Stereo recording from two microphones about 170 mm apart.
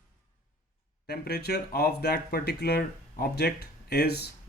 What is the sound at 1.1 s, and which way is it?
Speech, 70° left (ahead or behind).